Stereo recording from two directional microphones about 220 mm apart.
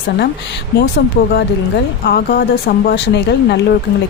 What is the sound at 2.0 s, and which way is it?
Speech, 45° left (ahead or behind).